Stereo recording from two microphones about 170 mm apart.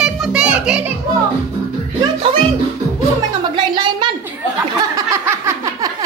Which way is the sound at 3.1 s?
25° right (ahead or behind).